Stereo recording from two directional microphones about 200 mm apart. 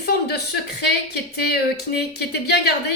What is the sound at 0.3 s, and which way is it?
Speech, 55° left (ahead or behind).